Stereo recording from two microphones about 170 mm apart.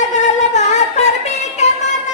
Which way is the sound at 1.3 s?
40° left (ahead or behind).